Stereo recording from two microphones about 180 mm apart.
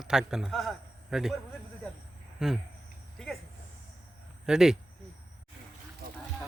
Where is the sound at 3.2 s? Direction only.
Centre (ahead or behind).